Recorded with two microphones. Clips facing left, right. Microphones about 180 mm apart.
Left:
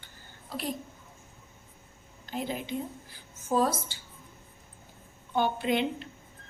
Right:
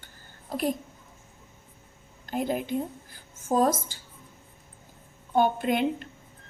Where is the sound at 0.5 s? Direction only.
50° right (ahead or behind).